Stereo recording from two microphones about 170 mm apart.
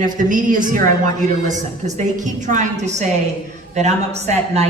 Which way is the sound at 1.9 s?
45° right (ahead or behind).